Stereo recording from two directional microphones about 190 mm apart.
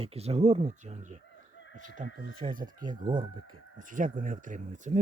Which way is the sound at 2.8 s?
25° right (ahead or behind).